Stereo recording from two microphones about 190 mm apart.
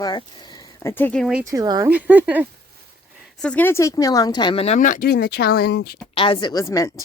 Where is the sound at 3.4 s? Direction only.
5° left (ahead or behind); by 6.0 s 60° left (ahead or behind).